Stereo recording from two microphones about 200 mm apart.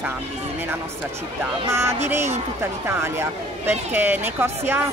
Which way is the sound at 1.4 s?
10° right (ahead or behind).